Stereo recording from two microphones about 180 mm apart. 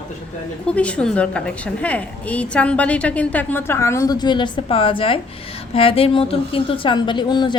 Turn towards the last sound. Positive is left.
turn(degrees=25)  # may be behind; listen again after turning